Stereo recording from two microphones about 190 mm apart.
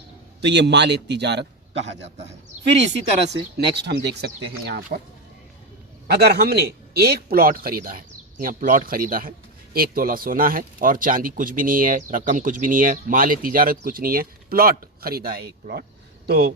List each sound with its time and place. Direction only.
0.4 s speech: 65° right (ahead or behind)
3.2 s speech: 65° right (ahead or behind)
4.9 s speech: 45° right (ahead or behind)
6.1 s speech: 60° right (ahead or behind)